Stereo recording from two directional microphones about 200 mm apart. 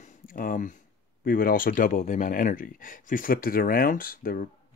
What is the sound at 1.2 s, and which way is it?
Speech, 45° left (ahead or behind).